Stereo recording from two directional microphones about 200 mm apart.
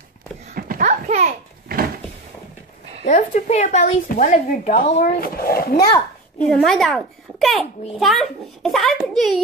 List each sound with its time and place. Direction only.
0.6 s a sound: 45° right (ahead or behind)
3.1 s a woman's voice: 35° left (ahead or behind)
5.8 s a child's voice: 10° left (ahead or behind)